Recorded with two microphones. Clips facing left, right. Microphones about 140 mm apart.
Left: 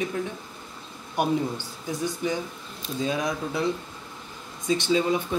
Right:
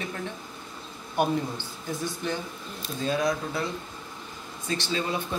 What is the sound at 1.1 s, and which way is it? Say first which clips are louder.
Speech: left 1 dB; 10° left (ahead or behind).